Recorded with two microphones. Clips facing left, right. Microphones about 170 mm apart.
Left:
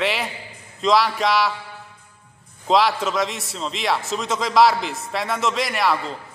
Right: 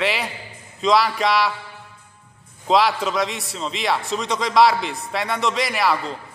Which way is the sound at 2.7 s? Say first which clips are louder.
Even; centre (ahead or behind).